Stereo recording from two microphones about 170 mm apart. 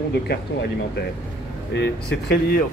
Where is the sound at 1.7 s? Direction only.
80° left.